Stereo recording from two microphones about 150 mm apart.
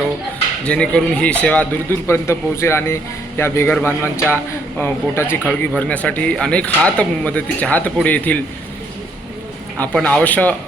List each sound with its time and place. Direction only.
0.6 s speech: 5° left (ahead or behind)
2.0 s speech: 20° left (ahead or behind)
9.7 s speech: 10° left (ahead or behind)